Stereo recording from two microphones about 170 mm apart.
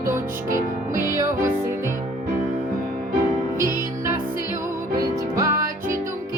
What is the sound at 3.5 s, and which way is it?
Music, 20° right (ahead or behind).